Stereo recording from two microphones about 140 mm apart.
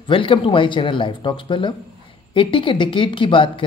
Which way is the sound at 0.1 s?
40° left (ahead or behind).